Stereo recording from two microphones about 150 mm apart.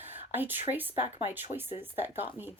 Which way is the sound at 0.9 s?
40° left (ahead or behind).